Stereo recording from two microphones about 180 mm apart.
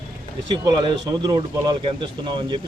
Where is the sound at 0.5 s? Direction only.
25° right (ahead or behind).